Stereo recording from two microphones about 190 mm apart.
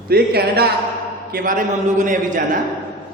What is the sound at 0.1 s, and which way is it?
A man's voice, 55° right (ahead or behind).